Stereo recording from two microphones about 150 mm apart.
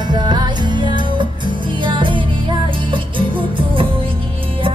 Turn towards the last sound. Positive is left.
turn(degrees=-35)  # may be behind; listen again after turning